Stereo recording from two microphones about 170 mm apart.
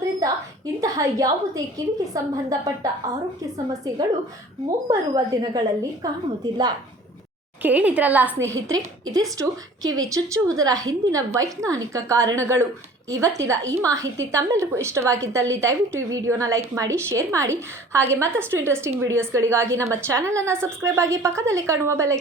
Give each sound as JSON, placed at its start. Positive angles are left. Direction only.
{"t": 0.2, "sound": "a sound", "side_deg": -20}
{"t": 2.1, "sound": "a woman's voice", "side_deg": -20}
{"t": 7.6, "sound": "a woman's voice", "side_deg": -10}